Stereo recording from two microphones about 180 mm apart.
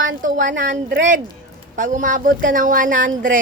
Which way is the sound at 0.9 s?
85° right.